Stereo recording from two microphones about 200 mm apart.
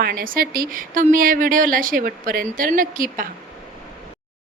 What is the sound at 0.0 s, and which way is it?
A woman's voice, 45° right (ahead or behind).